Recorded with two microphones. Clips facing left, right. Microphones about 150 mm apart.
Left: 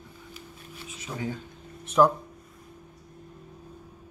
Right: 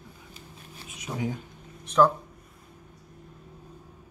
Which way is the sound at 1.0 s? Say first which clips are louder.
Right 2 dB; 15° right (ahead or behind).